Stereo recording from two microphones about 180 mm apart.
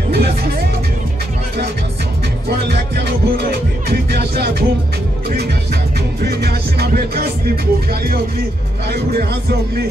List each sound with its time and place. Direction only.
0.1 s music: 60° right (ahead or behind)
2.6 s music: 65° right (ahead or behind)
6.2 s music: 65° right (ahead or behind)